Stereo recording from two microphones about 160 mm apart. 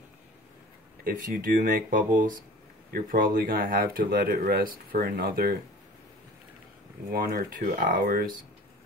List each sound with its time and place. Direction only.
1.0 s speech: 60° right (ahead or behind)
7.1 s speech: 70° right (ahead or behind)